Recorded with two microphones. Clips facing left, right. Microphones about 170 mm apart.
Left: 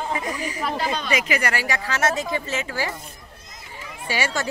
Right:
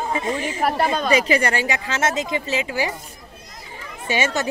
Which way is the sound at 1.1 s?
30° right (ahead or behind).